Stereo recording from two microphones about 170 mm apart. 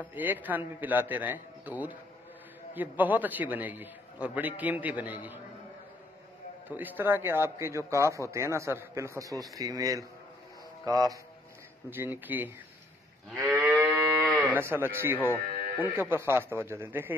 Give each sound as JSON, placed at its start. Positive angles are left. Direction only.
{"t": 0.0, "sound": "speech", "side_deg": -10}
{"t": 6.7, "sound": "speech", "side_deg": -10}
{"t": 13.6, "sound": "moo", "side_deg": -10}
{"t": 14.5, "sound": "speech", "side_deg": -15}
{"t": 15.1, "sound": "speech", "side_deg": 10}
{"t": 16.1, "sound": "speech", "side_deg": -15}